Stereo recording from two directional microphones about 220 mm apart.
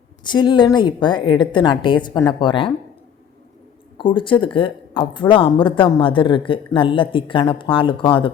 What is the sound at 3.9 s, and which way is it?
Speech, 20° left (ahead or behind).